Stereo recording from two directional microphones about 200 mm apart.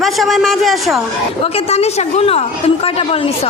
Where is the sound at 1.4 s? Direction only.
30° left (ahead or behind).